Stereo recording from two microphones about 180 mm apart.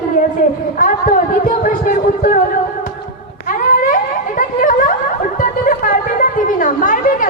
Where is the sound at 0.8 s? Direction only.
50° left (ahead or behind).